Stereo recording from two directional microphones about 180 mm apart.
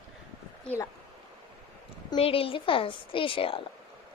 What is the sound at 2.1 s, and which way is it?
A woman's voice, 30° left (ahead or behind).